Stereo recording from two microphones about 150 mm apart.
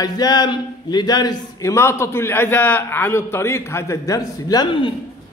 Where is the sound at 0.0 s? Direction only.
25° left (ahead or behind).